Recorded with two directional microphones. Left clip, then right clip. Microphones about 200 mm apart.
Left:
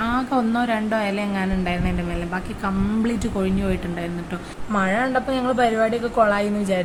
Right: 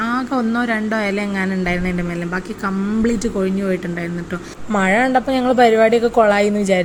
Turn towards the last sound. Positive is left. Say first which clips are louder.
# right 6 dB
turn(degrees=-30)  # may be behind; listen again after turning